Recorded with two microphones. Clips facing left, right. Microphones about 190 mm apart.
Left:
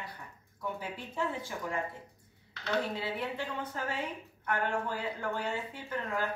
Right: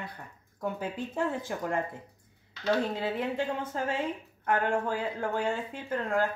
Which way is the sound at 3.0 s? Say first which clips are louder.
Right 5 dB; 50° right (ahead or behind).